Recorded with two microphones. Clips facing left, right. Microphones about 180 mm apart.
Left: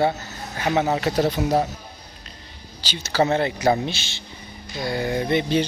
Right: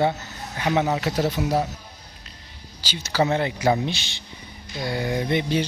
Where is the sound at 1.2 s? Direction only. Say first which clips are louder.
Left 3 dB; 35° left (ahead or behind).